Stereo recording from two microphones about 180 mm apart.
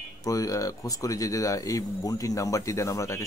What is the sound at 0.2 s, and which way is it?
Speech, 20° left (ahead or behind).